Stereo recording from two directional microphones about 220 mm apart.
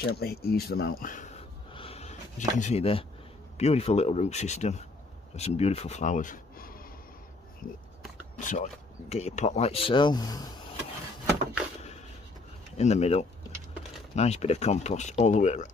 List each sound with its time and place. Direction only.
0.1 s speech: 45° left (ahead or behind); by 10.5 s 15° left (ahead or behind)
12.7 s speech: 30° left (ahead or behind)